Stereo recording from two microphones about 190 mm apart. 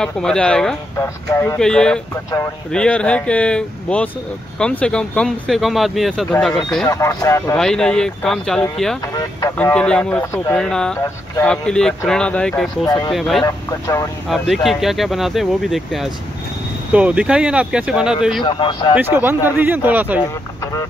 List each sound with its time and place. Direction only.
0.0 s speech: 5° left (ahead or behind)
0.9 s speech: 15° left (ahead or behind)
6.9 s speech: 15° left (ahead or behind)
7.5 s speech: 5° left (ahead or behind)
12.8 s speech: 20° left (ahead or behind)
13.1 s speech: centre (ahead or behind)
13.4 s speech: 15° left (ahead or behind)
14.3 s speech: centre (ahead or behind)
18.4 s speech: 25° left (ahead or behind)
18.9 s speech: 10° right (ahead or behind)